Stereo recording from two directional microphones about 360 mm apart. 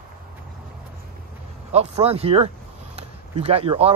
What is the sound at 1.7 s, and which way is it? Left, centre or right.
Speech, centre.